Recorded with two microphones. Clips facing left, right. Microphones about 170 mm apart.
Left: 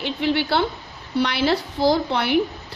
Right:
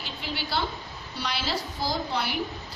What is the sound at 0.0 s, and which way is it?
A woman's voice, 65° left (ahead or behind).